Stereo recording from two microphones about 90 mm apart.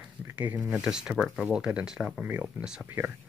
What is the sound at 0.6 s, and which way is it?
Speech, 10° right (ahead or behind).